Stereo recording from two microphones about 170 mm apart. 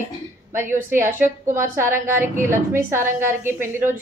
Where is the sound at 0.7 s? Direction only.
15° right (ahead or behind).